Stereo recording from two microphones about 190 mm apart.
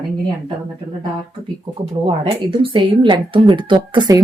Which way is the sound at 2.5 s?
25° right (ahead or behind).